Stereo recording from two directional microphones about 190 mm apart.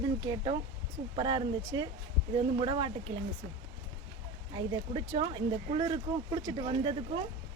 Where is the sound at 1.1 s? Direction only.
25° right (ahead or behind).